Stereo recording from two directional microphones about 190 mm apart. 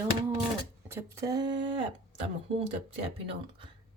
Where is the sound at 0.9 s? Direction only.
15° right (ahead or behind).